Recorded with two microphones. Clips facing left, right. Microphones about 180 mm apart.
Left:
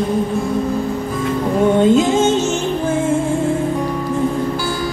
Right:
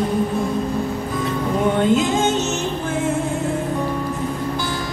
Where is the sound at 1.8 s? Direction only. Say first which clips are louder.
Left 5 dB; 25° left (ahead or behind).